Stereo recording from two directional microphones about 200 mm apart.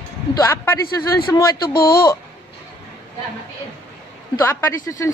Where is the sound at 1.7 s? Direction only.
50° left (ahead or behind).